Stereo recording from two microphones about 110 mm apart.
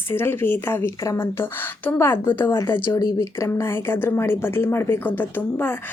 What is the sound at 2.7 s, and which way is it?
A woman's voice, 40° left (ahead or behind).